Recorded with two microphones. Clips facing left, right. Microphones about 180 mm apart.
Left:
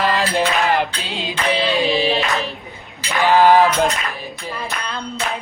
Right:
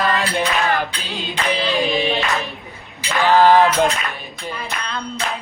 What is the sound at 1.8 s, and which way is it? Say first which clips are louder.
Speech: left 2 dB; 35° left (ahead or behind).